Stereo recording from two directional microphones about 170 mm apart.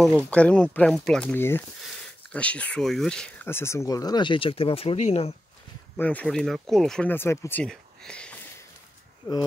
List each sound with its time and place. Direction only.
0.3 s speech: 5° left (ahead or behind); by 5.3 s 40° left (ahead or behind)
5.9 s speech: 10° left (ahead or behind)
7.6 s a sound: 5° left (ahead or behind)